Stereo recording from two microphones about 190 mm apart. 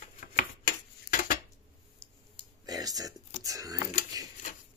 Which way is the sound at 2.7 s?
20° right (ahead or behind).